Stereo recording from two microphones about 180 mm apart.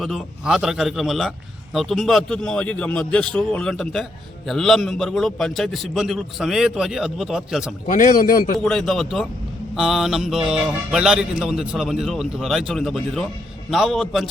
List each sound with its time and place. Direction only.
0.0 s speech: centre (ahead or behind)
7.9 s speech: 45° left (ahead or behind)
8.5 s speech: centre (ahead or behind)